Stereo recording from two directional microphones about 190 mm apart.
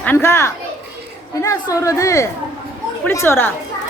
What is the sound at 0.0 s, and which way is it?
A child's voice, 10° left (ahead or behind).